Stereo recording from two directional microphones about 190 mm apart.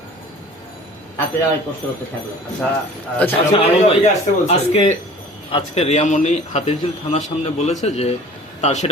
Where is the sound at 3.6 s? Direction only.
35° left (ahead or behind).